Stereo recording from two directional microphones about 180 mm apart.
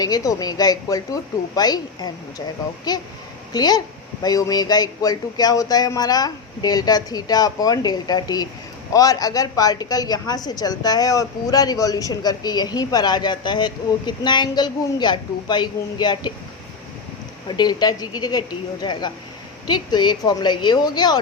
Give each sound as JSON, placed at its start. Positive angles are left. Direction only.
{"t": 0.0, "sound": "speech", "side_deg": 20}
{"t": 17.5, "sound": "speech", "side_deg": 25}